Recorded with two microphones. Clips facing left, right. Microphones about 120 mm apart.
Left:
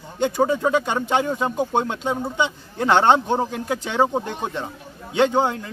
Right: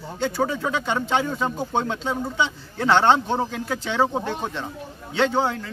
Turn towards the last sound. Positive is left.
turn(degrees=15)  # may be behind; listen again after turning